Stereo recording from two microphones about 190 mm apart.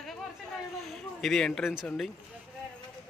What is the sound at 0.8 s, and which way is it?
Speech, centre (ahead or behind).